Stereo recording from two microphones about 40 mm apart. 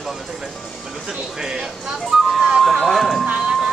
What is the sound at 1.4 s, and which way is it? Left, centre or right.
Speech, centre.